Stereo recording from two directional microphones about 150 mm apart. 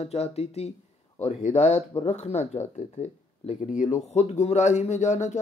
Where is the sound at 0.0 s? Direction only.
45° left (ahead or behind).